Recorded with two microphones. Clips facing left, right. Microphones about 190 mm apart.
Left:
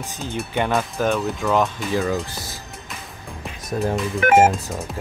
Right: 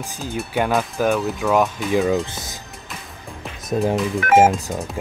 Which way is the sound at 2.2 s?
20° right (ahead or behind).